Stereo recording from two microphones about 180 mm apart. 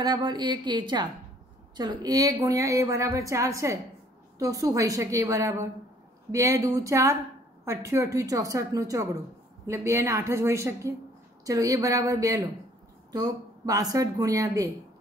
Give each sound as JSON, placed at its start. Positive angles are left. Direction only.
{"t": 0.0, "sound": "a woman's voice", "side_deg": -25}